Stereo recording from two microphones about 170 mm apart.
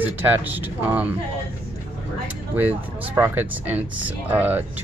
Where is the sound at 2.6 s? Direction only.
10° right (ahead or behind).